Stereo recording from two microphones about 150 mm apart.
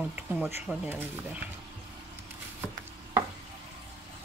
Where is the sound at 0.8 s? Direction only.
15° right (ahead or behind).